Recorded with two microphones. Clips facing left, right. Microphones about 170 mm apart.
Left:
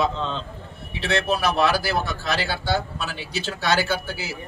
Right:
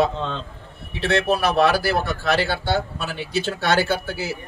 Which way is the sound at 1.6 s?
60° right (ahead or behind).